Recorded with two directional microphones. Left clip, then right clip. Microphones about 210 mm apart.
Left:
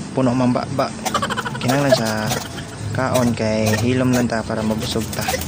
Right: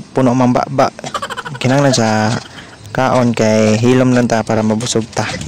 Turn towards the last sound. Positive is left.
turn(degrees=-45)  # may be behind; listen again after turning